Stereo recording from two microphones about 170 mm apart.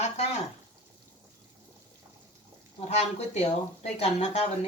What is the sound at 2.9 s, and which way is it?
Speech, 40° left (ahead or behind).